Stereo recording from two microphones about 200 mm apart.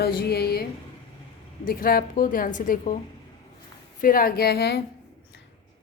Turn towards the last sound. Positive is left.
turn(degrees=55)  # may be behind; listen again after turning